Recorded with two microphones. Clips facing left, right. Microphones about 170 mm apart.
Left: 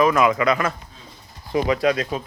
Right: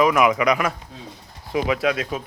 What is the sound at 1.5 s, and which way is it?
Speech, 5° right (ahead or behind).